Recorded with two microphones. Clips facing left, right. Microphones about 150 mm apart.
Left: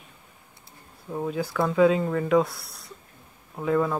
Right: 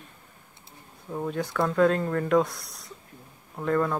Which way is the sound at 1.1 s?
5° left (ahead or behind).